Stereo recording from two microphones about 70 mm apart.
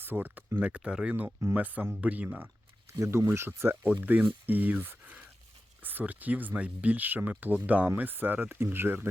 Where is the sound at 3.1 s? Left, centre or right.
Right.